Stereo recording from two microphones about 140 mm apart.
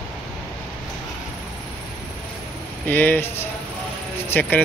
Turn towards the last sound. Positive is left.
turn(degrees=10)  # may be behind; listen again after turning